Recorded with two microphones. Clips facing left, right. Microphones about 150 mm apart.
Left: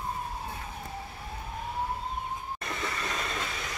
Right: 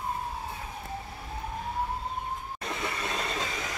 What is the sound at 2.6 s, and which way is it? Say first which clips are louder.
Train: right 2 dB; 20° right (ahead or behind).